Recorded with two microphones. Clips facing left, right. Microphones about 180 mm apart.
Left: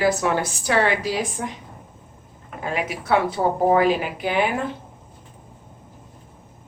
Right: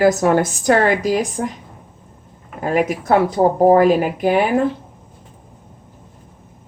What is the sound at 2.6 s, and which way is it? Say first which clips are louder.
Speech: right 9 dB; 45° right (ahead or behind).